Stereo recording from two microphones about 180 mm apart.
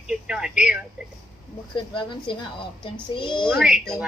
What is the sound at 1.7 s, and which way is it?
Speech, 25° left (ahead or behind).